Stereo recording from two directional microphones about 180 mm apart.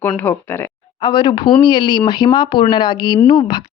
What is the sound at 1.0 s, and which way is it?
Speech, 20° left (ahead or behind).